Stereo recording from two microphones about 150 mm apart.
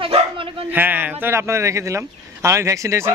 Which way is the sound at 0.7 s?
10° right (ahead or behind).